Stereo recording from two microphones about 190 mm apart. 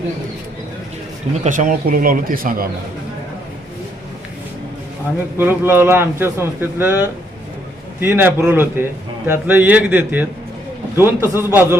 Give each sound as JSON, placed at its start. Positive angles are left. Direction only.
{"t": 1.5, "sound": "speech", "side_deg": -45}
{"t": 5.4, "sound": "a man's voice", "side_deg": -10}